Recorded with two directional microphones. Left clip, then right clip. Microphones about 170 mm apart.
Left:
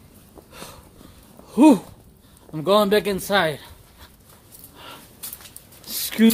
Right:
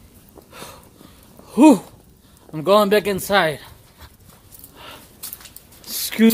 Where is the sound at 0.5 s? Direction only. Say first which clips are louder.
Right 3 dB; 20° right (ahead or behind).